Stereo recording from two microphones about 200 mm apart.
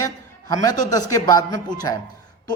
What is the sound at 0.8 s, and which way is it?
A woman's voice, 20° left (ahead or behind).